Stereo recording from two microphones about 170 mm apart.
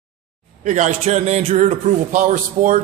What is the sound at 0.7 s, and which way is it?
Speech, 45° right (ahead or behind).